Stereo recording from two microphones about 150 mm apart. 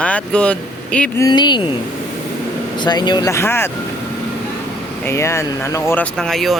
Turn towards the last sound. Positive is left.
turn(degrees=0)  # may be behind; listen again after turning